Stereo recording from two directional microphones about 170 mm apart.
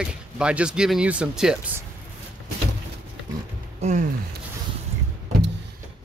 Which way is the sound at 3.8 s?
45° right (ahead or behind).